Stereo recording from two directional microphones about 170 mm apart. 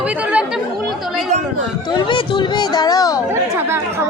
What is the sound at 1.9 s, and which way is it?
Speech, 25° left (ahead or behind).